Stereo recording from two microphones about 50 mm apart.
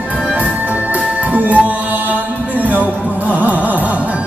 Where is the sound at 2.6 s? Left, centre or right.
Right.